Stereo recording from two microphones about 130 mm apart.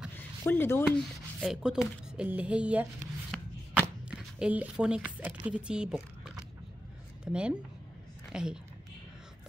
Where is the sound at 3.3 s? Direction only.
10° left (ahead or behind).